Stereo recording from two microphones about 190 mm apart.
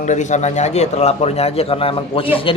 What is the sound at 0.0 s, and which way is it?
A man's voice, 40° left (ahead or behind).